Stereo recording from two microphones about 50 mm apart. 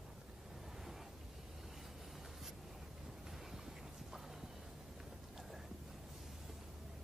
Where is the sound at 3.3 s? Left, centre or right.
Centre.